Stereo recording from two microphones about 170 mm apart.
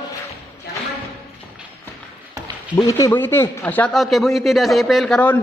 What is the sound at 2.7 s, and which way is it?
A man's voice, 20° left (ahead or behind).